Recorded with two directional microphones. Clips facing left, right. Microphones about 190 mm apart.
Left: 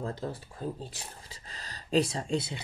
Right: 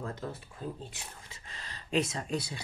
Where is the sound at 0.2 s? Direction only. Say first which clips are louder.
Left 3 dB; 35° left (ahead or behind).